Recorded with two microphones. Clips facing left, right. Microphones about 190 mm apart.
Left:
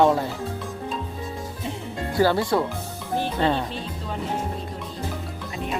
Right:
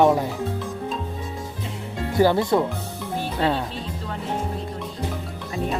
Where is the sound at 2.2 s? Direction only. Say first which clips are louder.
Right 2 dB; 20° right (ahead or behind).